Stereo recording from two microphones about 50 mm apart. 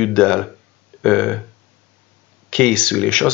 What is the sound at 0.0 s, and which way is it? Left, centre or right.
Speech, centre.